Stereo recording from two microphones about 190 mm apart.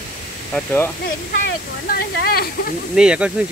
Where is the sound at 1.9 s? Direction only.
55° left (ahead or behind).